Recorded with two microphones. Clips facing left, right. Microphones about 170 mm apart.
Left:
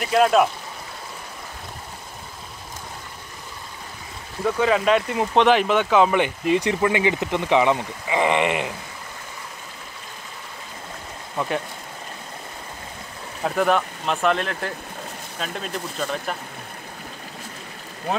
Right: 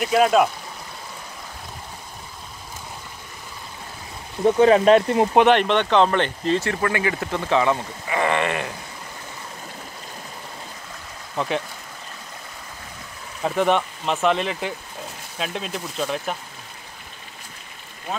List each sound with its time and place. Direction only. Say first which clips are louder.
0.0 s speech: even; centre (ahead or behind)
4.5 s speech: right 5 dB; 30° right (ahead or behind)
5.5 s speech: even; 5° left (ahead or behind)
11.3 s speech: right 1 dB; centre (ahead or behind)
13.4 s speech: even; centre (ahead or behind)